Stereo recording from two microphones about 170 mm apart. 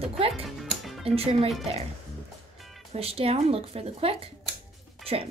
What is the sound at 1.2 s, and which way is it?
Speech, 35° right (ahead or behind).